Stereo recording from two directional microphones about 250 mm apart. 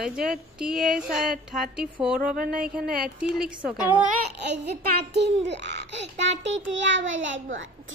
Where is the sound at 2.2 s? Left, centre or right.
Right.